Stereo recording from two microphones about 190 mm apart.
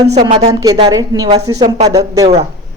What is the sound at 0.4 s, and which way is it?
Speech, 20° right (ahead or behind).